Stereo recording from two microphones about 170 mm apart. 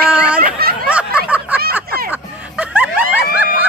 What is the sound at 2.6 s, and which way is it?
Snicker, 5° right (ahead or behind).